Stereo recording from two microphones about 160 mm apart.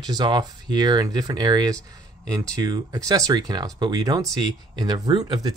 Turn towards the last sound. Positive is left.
turn(degrees=-25)  # may be behind; listen again after turning